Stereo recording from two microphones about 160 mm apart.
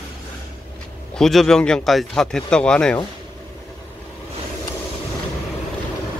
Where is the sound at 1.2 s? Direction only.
Centre (ahead or behind).